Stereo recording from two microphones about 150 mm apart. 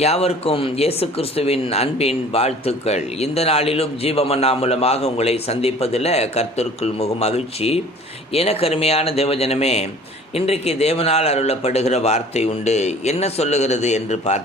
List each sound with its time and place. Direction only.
0.0 s speech: 45° left (ahead or behind)